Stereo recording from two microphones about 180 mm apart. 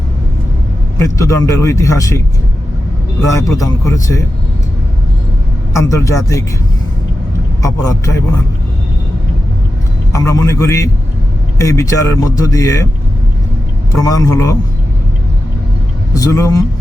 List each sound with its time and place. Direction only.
1.2 s speech: 20° left (ahead or behind)
5.7 s speech: 15° left (ahead or behind)
7.6 s speech: 15° left (ahead or behind)
10.1 s speech: 20° left (ahead or behind)
14.0 s speech: 20° left (ahead or behind)
16.1 s speech: 20° left (ahead or behind)